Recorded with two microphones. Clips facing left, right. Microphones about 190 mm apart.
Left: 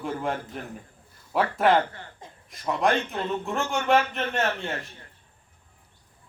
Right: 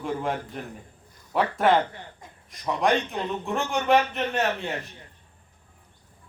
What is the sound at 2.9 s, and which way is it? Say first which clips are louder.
Speech: right 2 dB; 15° right (ahead or behind).